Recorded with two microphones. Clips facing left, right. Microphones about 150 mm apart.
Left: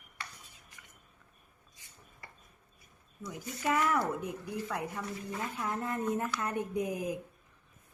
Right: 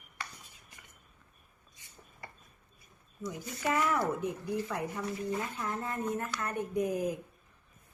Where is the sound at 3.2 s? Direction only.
Centre (ahead or behind).